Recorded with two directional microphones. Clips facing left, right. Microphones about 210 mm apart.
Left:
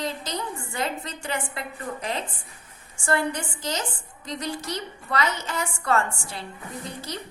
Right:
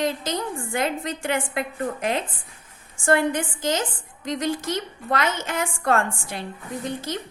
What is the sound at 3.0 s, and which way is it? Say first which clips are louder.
A woman's voice: right 5 dB; 50° right (ahead or behind).